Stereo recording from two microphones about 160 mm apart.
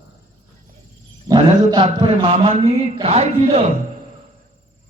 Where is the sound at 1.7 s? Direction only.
25° right (ahead or behind).